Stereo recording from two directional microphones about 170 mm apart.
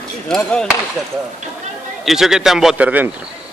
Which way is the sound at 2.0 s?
Centre (ahead or behind).